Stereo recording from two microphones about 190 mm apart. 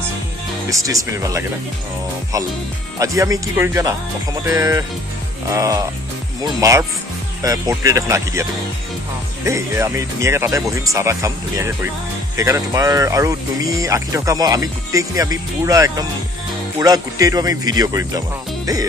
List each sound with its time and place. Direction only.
0.7 s speech: 15° right (ahead or behind)
3.0 s speech: 15° right (ahead or behind)